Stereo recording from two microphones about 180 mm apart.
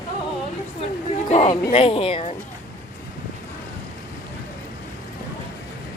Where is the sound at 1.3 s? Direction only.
40° left (ahead or behind).